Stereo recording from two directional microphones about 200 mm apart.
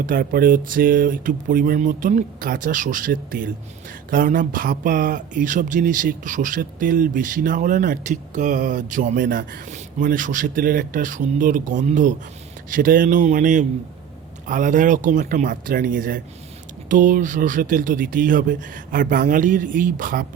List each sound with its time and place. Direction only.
0.0 s speech: 45° right (ahead or behind)